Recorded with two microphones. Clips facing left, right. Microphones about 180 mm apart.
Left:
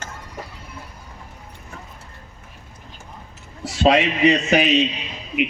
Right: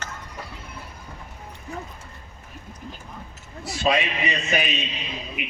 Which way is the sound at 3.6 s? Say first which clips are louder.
Left 6 dB; 80° left.